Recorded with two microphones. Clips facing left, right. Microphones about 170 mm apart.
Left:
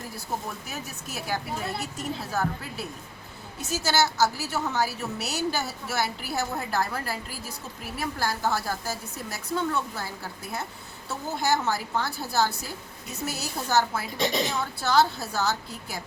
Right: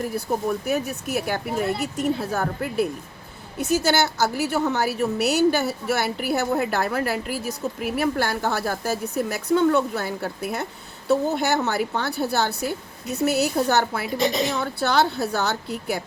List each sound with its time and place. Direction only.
0.6 s a woman's voice: 60° right (ahead or behind)